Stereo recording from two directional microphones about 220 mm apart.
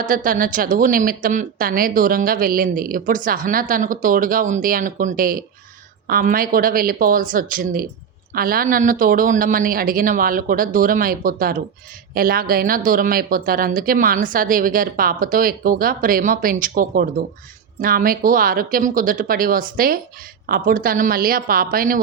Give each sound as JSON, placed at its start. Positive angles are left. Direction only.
{"t": 0.0, "sound": "speech", "side_deg": -40}